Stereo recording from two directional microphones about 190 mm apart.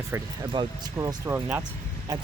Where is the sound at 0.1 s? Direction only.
15° right (ahead or behind).